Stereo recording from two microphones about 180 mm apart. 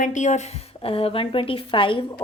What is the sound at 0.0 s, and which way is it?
A woman's voice, 45° left (ahead or behind).